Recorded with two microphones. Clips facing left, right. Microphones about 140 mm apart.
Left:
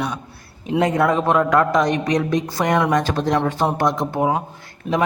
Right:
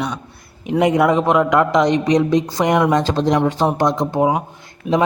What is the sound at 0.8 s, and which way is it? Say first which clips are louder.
A man's voice: right 3 dB; 15° right (ahead or behind).